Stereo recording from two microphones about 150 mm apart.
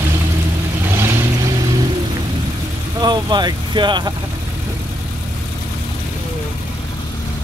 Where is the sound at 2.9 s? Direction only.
30° right (ahead or behind).